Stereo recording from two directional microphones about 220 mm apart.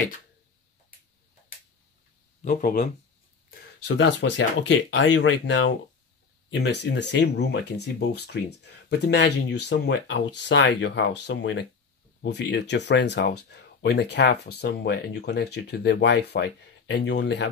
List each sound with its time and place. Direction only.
2.4 s speech: 40° left (ahead or behind)
3.4 s speech: 50° left (ahead or behind)